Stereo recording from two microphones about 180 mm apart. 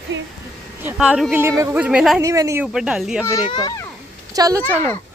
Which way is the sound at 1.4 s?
15° right (ahead or behind).